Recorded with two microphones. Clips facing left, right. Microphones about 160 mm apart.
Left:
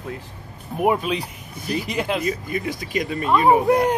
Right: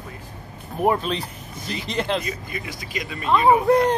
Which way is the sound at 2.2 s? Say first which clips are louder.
Left 7 dB; 45° left (ahead or behind).